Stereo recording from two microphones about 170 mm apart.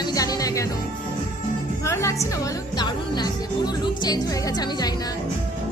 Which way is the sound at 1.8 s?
15° left (ahead or behind).